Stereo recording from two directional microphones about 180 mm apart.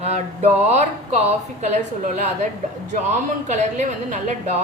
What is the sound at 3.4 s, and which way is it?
A woman's voice, 40° right (ahead or behind).